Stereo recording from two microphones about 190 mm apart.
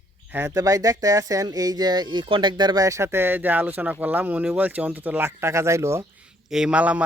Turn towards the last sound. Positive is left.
turn(degrees=-5)  # may be behind; listen again after turning